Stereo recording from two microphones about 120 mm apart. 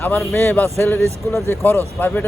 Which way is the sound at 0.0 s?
15° left (ahead or behind).